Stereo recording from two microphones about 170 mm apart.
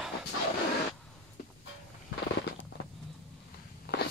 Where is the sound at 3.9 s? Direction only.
70° left (ahead or behind).